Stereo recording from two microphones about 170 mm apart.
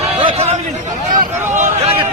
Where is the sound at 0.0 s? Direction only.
30° right (ahead or behind).